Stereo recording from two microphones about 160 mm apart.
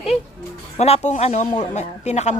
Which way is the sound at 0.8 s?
45° left (ahead or behind).